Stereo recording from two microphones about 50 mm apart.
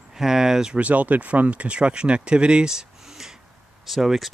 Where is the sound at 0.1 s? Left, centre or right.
Centre.